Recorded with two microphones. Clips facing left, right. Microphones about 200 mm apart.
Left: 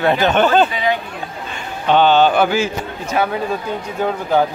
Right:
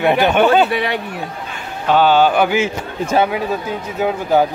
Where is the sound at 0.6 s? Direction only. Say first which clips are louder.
Even; 70° right (ahead or behind).